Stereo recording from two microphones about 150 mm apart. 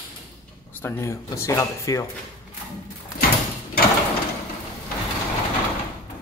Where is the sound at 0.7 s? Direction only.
15° left (ahead or behind).